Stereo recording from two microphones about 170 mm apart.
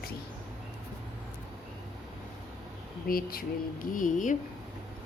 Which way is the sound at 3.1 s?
60° left (ahead or behind).